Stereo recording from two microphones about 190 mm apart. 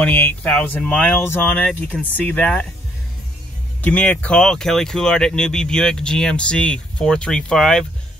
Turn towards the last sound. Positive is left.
turn(degrees=5)  # may be behind; listen again after turning